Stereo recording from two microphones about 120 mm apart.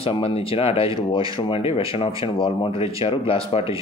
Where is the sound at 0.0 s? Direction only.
50° left (ahead or behind).